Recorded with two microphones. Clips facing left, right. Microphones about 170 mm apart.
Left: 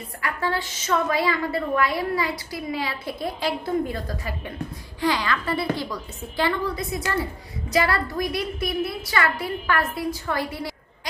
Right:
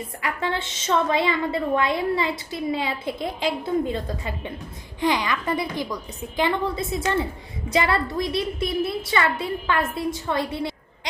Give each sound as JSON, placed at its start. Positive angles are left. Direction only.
{"t": 0.2, "sound": "a woman's voice", "side_deg": -20}